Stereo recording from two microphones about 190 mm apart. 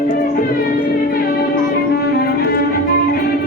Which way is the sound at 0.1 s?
50° left (ahead or behind).